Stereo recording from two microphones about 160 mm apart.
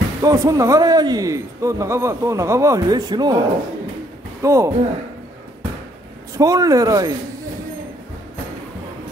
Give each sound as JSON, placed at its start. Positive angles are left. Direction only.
{"t": 0.2, "sound": "a man's voice", "side_deg": -20}
{"t": 4.4, "sound": "a man's voice", "side_deg": -20}
{"t": 6.3, "sound": "a man's voice", "side_deg": -20}